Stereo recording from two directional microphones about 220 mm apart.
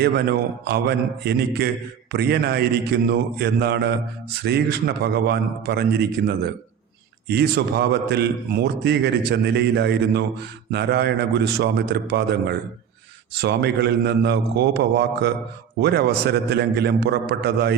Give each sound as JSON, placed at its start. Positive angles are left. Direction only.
{"t": 0.0, "sound": "a man's voice", "side_deg": -50}